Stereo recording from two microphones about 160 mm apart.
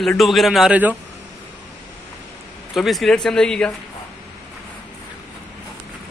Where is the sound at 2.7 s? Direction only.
Centre (ahead or behind).